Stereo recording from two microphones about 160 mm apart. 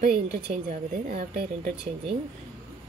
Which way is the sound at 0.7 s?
65° right (ahead or behind).